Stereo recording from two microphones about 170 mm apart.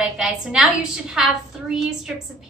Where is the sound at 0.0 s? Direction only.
Centre (ahead or behind).